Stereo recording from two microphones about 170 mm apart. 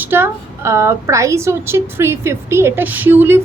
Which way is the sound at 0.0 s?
15° right (ahead or behind).